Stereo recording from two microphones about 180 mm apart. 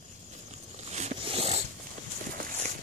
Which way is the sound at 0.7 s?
40° right (ahead or behind).